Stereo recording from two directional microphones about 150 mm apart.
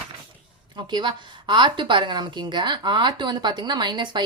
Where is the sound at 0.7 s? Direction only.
30° right (ahead or behind).